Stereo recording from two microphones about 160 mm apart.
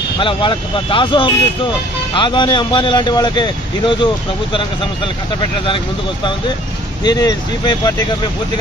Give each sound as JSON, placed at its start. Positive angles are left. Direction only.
{"t": 0.2, "sound": "a man's voice", "side_deg": 30}
{"t": 7.0, "sound": "a man's voice", "side_deg": 25}